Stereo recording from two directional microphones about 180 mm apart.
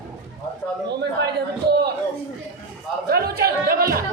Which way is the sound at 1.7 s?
65° right (ahead or behind).